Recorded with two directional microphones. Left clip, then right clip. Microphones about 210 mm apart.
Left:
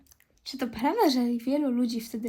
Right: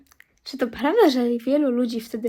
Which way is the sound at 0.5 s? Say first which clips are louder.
Right 7 dB; 25° right (ahead or behind).